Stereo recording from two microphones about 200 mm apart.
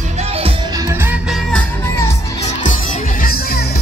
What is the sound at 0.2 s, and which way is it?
Music, 30° right (ahead or behind).